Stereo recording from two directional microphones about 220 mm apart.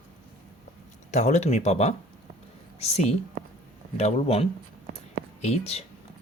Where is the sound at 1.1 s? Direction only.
30° left (ahead or behind).